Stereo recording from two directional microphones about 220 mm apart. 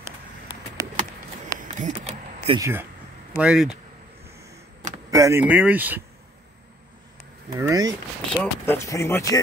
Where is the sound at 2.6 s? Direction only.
10° right (ahead or behind).